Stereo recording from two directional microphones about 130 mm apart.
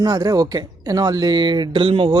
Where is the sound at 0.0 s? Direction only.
30° right (ahead or behind).